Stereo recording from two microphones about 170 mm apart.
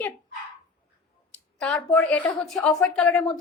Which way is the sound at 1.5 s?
5° left (ahead or behind).